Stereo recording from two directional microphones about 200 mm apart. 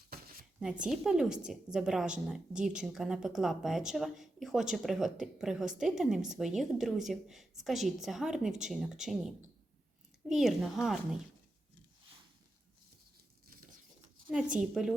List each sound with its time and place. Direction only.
0.1 s a sound: 50° right (ahead or behind)
0.9 s a woman's voice: 5° right (ahead or behind)
14.6 s a woman's voice: 5° right (ahead or behind)